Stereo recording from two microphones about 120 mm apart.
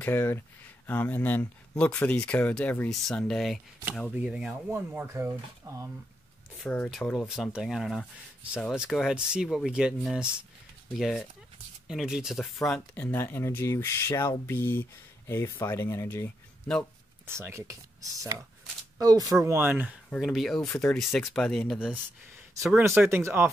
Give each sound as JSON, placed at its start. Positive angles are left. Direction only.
{"t": 0.0, "sound": "speech", "side_deg": 20}
{"t": 4.1, "sound": "speech", "side_deg": -10}
{"t": 4.6, "sound": "speech", "side_deg": -20}
{"t": 6.6, "sound": "speech", "side_deg": 10}
{"t": 12.9, "sound": "speech", "side_deg": 15}
{"t": 17.3, "sound": "speech", "side_deg": -20}
{"t": 20.1, "sound": "speech", "side_deg": 0}
{"t": 22.8, "sound": "speech", "side_deg": -20}